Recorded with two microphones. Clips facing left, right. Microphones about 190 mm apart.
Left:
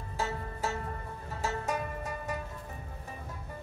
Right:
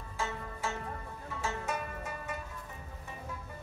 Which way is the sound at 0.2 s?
40° left (ahead or behind).